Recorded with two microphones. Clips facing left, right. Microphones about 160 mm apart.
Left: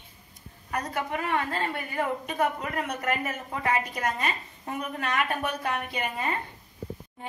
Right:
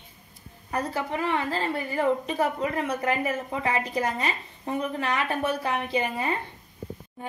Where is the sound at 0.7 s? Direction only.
30° right (ahead or behind).